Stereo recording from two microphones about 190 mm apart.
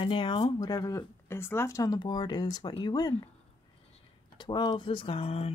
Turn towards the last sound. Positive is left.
turn(degrees=30)  # may be behind; listen again after turning